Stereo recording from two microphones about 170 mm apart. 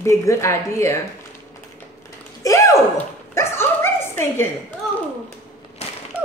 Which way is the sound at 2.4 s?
20° left (ahead or behind).